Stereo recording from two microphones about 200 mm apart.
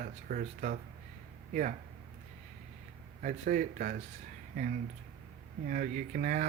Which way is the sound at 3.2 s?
40° right (ahead or behind).